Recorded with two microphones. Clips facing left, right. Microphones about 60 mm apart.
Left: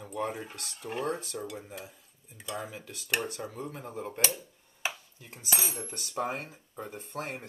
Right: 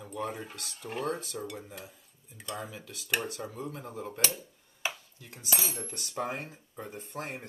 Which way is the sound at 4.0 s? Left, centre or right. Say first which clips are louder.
Left 2 dB; left.